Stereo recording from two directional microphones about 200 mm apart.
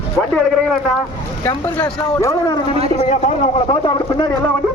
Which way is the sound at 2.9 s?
35° left (ahead or behind).